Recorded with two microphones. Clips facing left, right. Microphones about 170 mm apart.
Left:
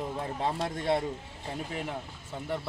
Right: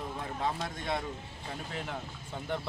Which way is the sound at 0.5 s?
30° left (ahead or behind).